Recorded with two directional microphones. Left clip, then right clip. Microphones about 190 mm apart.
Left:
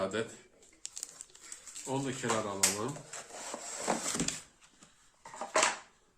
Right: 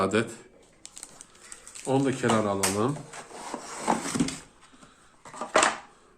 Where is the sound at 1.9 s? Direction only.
45° right (ahead or behind).